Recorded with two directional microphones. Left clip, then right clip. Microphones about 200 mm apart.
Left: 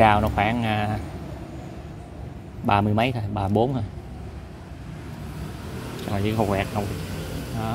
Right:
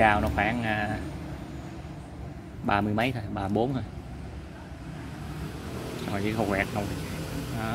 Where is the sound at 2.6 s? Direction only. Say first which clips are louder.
Left 5 dB; 15° left (ahead or behind).